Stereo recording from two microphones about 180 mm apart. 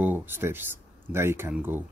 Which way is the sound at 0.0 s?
10° right (ahead or behind).